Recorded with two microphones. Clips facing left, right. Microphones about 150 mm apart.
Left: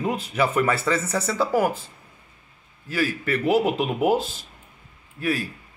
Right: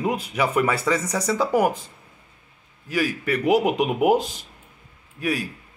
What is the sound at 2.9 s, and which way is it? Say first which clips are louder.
Speech: right 1 dB; 15° right (ahead or behind).